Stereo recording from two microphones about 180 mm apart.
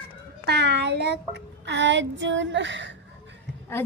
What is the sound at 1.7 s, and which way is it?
Child singing, 90° right.